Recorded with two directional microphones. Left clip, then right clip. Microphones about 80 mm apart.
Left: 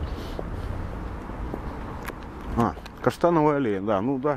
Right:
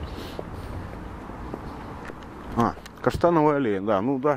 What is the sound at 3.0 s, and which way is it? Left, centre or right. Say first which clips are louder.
Speech: right 1 dB; centre.